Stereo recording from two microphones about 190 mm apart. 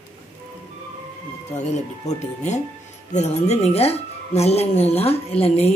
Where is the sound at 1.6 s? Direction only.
35° left (ahead or behind).